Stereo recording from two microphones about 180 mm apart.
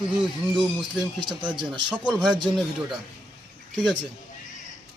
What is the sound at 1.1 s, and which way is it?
Speech, 25° right (ahead or behind).